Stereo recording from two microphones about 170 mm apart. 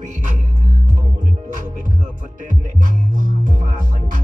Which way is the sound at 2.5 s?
50° right (ahead or behind).